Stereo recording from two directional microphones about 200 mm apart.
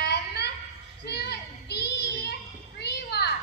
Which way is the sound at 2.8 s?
55° left (ahead or behind).